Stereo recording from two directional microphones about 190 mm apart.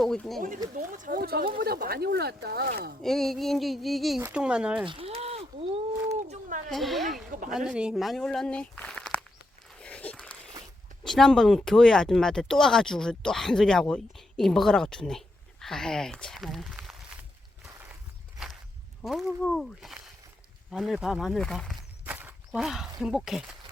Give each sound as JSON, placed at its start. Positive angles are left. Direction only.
{"t": 0.0, "sound": "speech", "side_deg": 0}
{"t": 0.3, "sound": "speech", "side_deg": -45}
{"t": 3.0, "sound": "speech", "side_deg": 0}
{"t": 4.9, "sound": "a sound", "side_deg": -30}
{"t": 6.2, "sound": "speech", "side_deg": -40}
{"t": 6.7, "sound": "speech", "side_deg": 0}
{"t": 7.3, "sound": "speech", "side_deg": -45}
{"t": 7.5, "sound": "speech", "side_deg": -5}
{"t": 9.8, "sound": "a sound", "side_deg": 5}
{"t": 11.0, "sound": "speech", "side_deg": 5}
{"t": 19.5, "sound": "speech", "side_deg": 0}
{"t": 22.0, "sound": "speech", "side_deg": -10}